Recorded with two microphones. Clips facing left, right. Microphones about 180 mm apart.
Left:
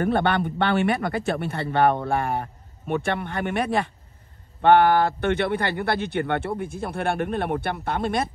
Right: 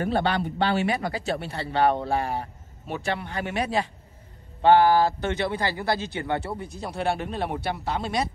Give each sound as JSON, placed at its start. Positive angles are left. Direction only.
{"t": 0.0, "sound": "speech", "side_deg": 60}